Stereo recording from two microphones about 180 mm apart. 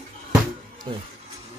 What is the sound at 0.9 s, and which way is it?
Speech, 25° right (ahead or behind).